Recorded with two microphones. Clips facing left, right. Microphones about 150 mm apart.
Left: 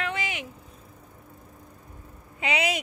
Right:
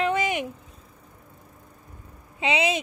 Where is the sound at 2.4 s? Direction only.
25° right (ahead or behind).